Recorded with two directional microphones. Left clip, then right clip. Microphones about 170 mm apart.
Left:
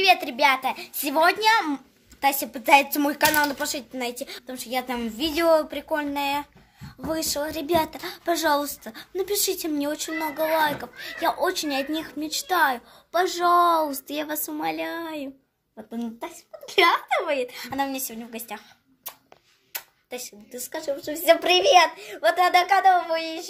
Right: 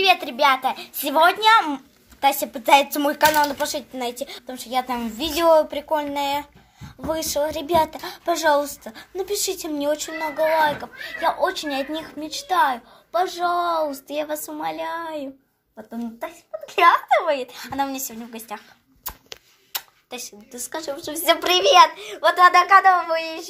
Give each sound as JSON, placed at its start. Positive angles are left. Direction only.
{"t": 0.0, "sound": "a woman's voice", "side_deg": 10}
{"t": 16.8, "sound": "a woman's voice", "side_deg": 5}
{"t": 19.7, "sound": "a woman's voice", "side_deg": 10}